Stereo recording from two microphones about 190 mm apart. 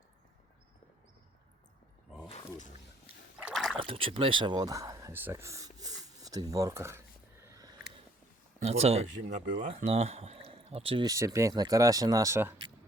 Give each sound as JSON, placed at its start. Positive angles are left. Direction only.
{"t": 2.3, "sound": "speech", "side_deg": 40}
{"t": 3.4, "sound": "a sound", "side_deg": 0}
{"t": 3.8, "sound": "speech", "side_deg": -30}
{"t": 8.5, "sound": "speech", "side_deg": -35}